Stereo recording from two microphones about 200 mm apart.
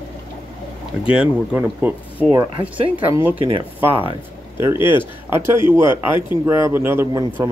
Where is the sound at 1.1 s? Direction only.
5° right (ahead or behind).